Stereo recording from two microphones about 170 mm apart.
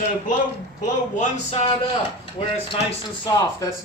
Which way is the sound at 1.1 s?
40° left (ahead or behind).